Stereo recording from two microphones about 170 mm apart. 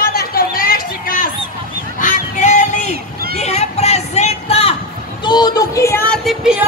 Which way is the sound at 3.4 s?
40° left (ahead or behind).